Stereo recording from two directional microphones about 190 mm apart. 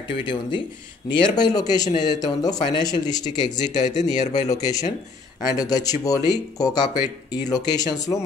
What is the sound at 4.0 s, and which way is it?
Speech, 40° left (ahead or behind).